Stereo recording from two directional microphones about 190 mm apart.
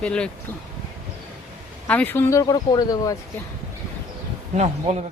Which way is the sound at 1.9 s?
10° left (ahead or behind).